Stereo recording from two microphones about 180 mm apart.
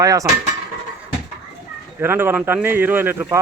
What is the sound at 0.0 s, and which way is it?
Cutlery, 20° right (ahead or behind).